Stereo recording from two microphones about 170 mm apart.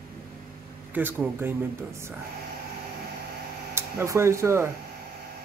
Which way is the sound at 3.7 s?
15° right (ahead or behind).